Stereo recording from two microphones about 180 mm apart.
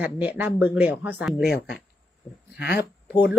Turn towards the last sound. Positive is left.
turn(degrees=65)  # may be behind; listen again after turning